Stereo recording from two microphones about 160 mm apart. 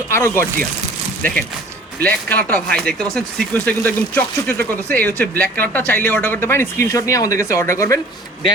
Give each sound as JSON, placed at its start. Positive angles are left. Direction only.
{"t": 0.1, "sound": "speech", "side_deg": 15}
{"t": 1.2, "sound": "speech", "side_deg": 5}